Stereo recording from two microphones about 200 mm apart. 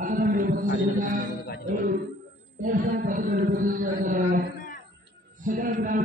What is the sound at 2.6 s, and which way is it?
A man's voice, 40° right (ahead or behind).